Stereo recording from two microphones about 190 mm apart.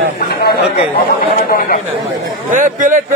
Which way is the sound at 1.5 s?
50° left (ahead or behind).